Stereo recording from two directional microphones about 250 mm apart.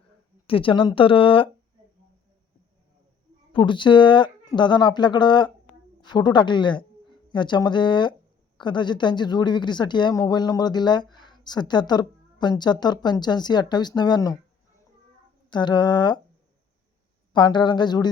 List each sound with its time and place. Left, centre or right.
0.4 s speech: left
3.5 s speech: centre
15.4 s speech: centre
17.3 s speech: centre